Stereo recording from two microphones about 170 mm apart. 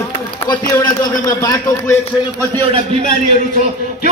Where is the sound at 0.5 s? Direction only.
20° left (ahead or behind).